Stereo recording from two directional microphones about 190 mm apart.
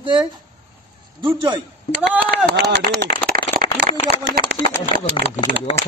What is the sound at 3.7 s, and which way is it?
Speech, 75° right (ahead or behind).